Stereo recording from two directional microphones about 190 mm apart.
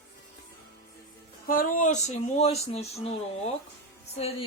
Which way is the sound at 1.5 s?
45° left (ahead or behind).